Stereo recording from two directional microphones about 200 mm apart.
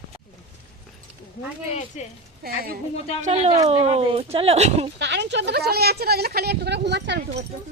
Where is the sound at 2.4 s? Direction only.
50° right (ahead or behind).